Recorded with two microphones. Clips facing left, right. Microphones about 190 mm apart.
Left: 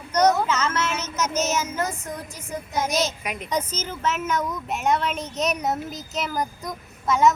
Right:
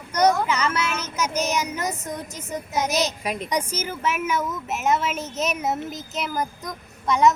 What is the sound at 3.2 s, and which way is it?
Speech, 35° right (ahead or behind).